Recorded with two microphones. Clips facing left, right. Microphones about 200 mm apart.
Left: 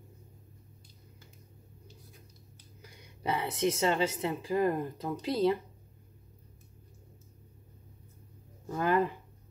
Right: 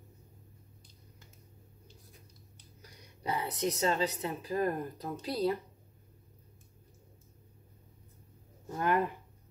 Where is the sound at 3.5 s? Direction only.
90° left.